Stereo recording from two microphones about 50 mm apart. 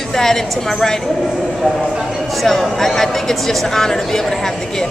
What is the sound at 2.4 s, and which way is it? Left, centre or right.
Speech, centre.